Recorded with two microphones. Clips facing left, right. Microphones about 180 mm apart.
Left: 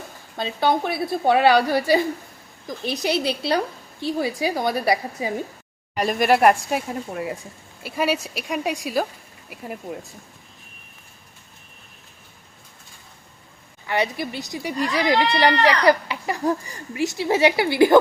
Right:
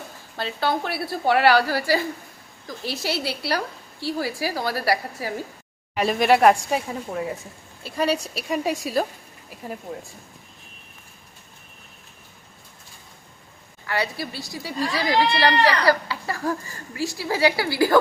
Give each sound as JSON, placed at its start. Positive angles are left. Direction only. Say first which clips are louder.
{"t": 0.3, "sound": "speech", "louder": "left 3 dB", "side_deg": 15}
{"t": 6.0, "sound": "a woman's voice", "louder": "even", "side_deg": 0}
{"t": 13.8, "sound": "speech", "louder": "left 3 dB", "side_deg": 20}